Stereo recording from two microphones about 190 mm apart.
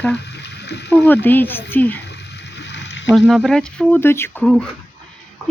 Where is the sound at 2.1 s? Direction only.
65° left (ahead or behind).